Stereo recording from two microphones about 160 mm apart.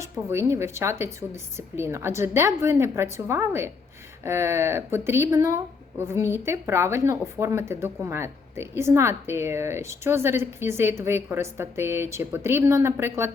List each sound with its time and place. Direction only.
0.0 s a woman's voice: 15° right (ahead or behind)